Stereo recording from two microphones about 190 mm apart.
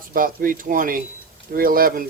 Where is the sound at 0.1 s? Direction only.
45° right (ahead or behind).